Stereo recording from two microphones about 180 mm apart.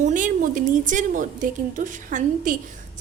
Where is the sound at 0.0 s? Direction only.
45° right (ahead or behind).